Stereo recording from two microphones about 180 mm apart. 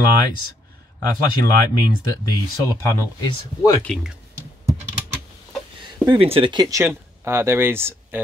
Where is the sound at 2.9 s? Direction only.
20° left (ahead or behind).